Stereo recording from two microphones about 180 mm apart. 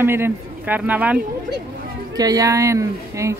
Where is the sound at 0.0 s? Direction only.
10° right (ahead or behind).